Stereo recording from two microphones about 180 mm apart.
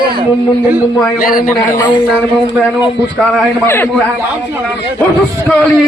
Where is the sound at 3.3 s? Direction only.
10° left (ahead or behind).